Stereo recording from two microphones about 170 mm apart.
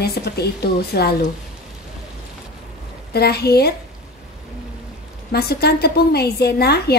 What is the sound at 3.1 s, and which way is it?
Speech, 70° left (ahead or behind).